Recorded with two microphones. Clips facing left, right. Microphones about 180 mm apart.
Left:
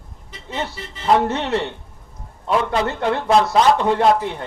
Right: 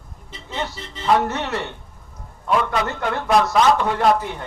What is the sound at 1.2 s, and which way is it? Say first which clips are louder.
A man's voice: left 3 dB; 30° left (ahead or behind).